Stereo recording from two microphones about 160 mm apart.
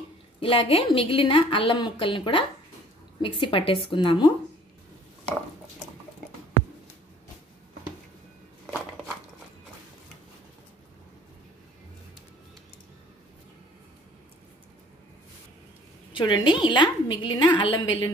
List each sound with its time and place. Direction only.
0.4 s a woman's voice: 35° left (ahead or behind)
16.1 s a woman's voice: 30° left (ahead or behind)